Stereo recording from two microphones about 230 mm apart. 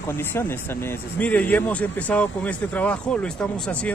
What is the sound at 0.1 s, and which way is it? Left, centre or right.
A man's voice, centre.